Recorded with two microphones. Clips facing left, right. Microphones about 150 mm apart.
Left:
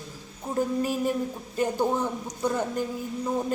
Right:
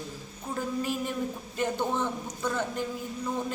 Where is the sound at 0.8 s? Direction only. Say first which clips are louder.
Left 4 dB; 40° left (ahead or behind).